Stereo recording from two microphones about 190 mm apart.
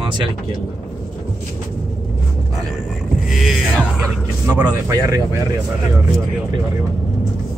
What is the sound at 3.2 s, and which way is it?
Music, centre (ahead or behind).